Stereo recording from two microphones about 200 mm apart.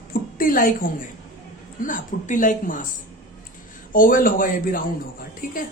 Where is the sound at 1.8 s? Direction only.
40° left (ahead or behind).